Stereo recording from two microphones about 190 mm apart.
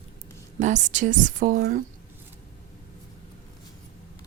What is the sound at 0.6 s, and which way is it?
Speech, 40° right (ahead or behind).